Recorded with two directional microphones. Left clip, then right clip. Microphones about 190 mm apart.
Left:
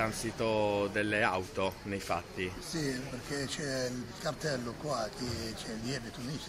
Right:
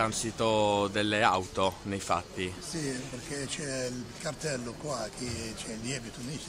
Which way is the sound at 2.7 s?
10° right (ahead or behind).